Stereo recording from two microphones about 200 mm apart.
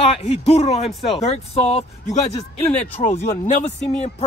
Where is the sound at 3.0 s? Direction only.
35° left (ahead or behind).